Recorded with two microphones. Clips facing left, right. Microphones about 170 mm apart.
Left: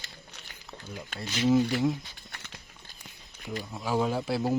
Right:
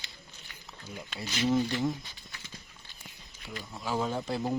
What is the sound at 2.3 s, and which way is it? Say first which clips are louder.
Horse: left 2 dB; 65° left (ahead or behind).